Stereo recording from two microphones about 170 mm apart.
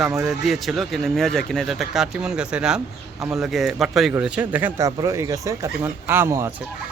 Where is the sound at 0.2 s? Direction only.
Centre (ahead or behind).